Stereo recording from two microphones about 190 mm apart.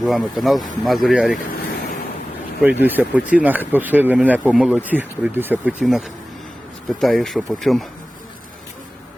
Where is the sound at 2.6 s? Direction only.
10° right (ahead or behind).